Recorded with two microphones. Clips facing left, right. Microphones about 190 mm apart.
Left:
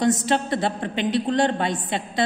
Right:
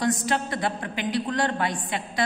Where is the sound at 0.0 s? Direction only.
25° left (ahead or behind).